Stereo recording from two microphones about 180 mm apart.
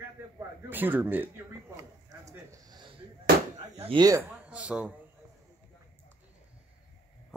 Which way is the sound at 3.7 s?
35° right (ahead or behind).